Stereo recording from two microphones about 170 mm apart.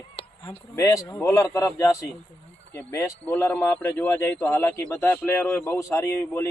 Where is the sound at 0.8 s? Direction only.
20° left (ahead or behind).